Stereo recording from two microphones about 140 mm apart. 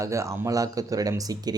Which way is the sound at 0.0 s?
20° right (ahead or behind).